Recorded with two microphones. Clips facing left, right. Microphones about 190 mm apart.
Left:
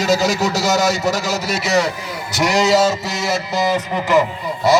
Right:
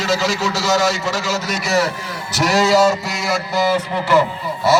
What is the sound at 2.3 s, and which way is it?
Speech, 15° left (ahead or behind).